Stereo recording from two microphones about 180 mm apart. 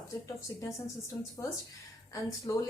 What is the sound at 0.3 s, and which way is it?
Speech, 15° left (ahead or behind).